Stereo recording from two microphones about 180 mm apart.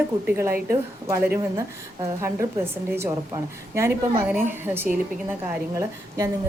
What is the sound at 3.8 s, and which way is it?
A woman's voice, 10° right (ahead or behind).